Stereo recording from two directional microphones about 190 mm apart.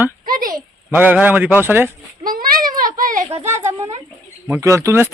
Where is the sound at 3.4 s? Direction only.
10° right (ahead or behind).